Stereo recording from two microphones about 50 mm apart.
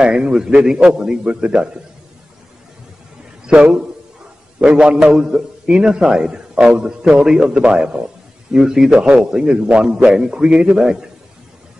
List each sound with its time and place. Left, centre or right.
0.0 s a man's voice: centre
3.4 s a man's voice: right